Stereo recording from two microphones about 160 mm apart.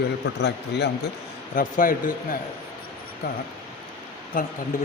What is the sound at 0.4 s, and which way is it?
Speech, 90° left.